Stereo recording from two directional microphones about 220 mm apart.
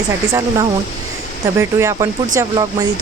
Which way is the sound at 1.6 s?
10° right (ahead or behind).